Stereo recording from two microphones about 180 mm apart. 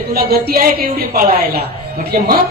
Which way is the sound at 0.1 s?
55° right (ahead or behind).